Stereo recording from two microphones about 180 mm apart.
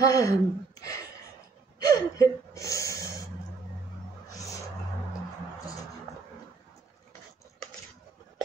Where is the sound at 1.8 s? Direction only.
20° left (ahead or behind).